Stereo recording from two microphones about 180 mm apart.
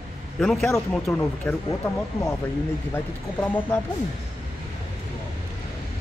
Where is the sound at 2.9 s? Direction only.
10° left (ahead or behind).